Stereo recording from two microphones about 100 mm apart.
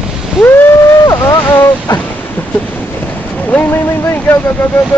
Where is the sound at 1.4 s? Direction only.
25° left (ahead or behind).